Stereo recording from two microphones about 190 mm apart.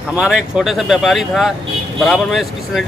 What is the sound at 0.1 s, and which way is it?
Speech, 5° right (ahead or behind).